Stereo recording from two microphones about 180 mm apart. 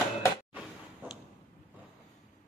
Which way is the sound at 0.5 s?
5° right (ahead or behind).